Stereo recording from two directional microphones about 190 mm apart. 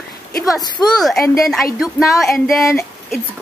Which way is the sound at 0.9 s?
Centre (ahead or behind).